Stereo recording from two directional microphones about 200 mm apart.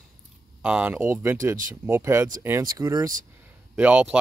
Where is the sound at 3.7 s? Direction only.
5° right (ahead or behind).